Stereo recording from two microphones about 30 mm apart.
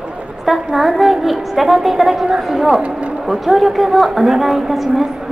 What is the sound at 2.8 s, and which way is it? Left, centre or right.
Speech, right.